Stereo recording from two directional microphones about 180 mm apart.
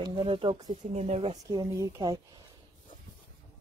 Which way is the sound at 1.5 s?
20° right (ahead or behind).